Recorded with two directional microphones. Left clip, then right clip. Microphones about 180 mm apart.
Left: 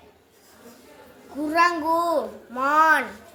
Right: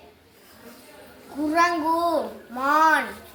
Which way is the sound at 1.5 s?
35° left (ahead or behind).